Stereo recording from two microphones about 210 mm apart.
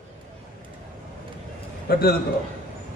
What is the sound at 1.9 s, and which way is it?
Speech, 45° left (ahead or behind).